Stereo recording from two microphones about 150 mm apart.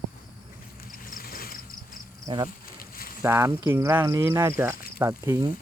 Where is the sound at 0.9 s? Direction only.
70° left (ahead or behind).